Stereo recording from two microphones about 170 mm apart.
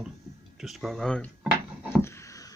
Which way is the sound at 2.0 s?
15° left (ahead or behind).